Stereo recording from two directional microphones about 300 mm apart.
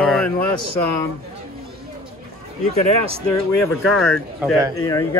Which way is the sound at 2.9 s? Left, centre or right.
Left.